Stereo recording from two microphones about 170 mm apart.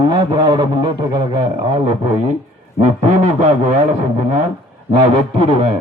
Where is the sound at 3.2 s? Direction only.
40° right (ahead or behind).